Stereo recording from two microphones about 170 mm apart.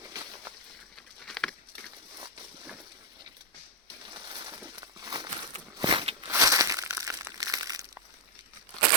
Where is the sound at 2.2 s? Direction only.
25° right (ahead or behind).